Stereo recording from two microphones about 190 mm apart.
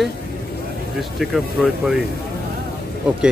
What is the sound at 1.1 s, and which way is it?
Speech, centre (ahead or behind).